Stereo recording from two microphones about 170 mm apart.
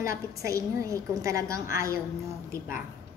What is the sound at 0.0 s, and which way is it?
A woman's voice, 20° right (ahead or behind).